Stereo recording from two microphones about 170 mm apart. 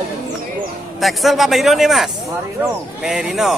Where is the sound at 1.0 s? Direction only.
Centre (ahead or behind).